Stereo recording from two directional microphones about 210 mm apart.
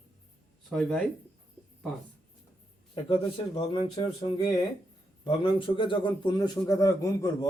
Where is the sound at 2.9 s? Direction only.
25° left (ahead or behind).